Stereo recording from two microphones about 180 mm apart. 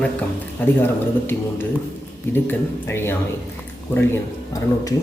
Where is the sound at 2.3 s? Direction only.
10° left (ahead or behind).